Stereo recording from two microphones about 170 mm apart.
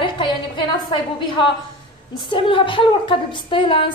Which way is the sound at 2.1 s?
30° left (ahead or behind).